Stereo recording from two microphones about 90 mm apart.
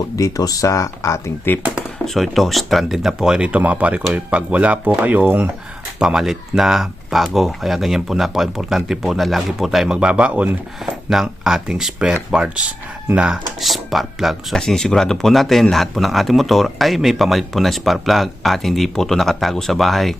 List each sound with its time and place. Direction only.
0.2 s speech: 40° left (ahead or behind)
2.1 s speech: centre (ahead or behind); by 5.5 s 20° right (ahead or behind)
6.0 s speech: 5° right (ahead or behind)